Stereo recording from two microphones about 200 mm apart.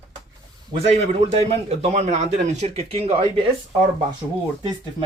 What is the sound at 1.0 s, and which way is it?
A man's voice, 30° right (ahead or behind).